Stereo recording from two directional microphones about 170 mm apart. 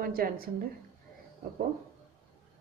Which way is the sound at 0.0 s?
60° right (ahead or behind).